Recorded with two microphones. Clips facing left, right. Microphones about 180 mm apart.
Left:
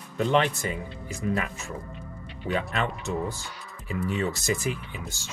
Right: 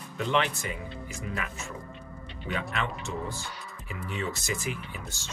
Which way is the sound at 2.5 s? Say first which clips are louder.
Left 4 dB; 40° left (ahead or behind).